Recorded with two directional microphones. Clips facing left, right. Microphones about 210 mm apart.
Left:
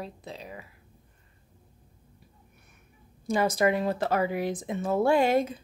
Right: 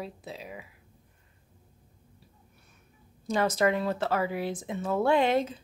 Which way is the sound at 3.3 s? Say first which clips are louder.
Left 1 dB; 10° left (ahead or behind).